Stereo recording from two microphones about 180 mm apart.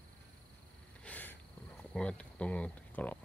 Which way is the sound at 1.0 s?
10° left (ahead or behind).